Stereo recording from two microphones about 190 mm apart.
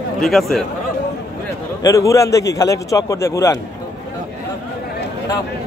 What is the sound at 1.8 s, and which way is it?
A man's voice, 15° left (ahead or behind).